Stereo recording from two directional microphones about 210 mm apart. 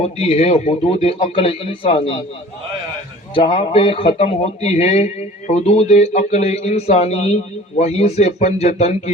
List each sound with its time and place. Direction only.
0.0 s a man's voice: 30° left (ahead or behind)
3.3 s speech: 25° left (ahead or behind)